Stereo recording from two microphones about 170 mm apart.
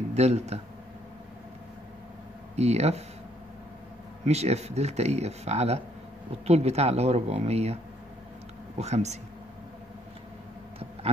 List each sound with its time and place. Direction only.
0.1 s speech: 40° right (ahead or behind)
2.5 s speech: 40° right (ahead or behind)
4.3 s speech: 40° right (ahead or behind)